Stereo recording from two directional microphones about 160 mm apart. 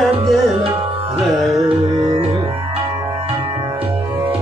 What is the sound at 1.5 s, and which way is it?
Music, 25° right (ahead or behind).